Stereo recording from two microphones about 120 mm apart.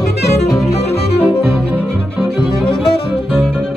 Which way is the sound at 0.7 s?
60° left (ahead or behind).